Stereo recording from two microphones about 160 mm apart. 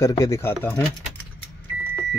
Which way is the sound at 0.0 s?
20° left (ahead or behind).